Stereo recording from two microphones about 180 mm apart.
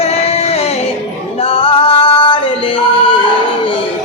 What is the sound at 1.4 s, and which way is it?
Singing, 30° left (ahead or behind).